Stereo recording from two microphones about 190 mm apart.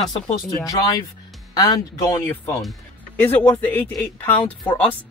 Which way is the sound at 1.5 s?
20° left (ahead or behind).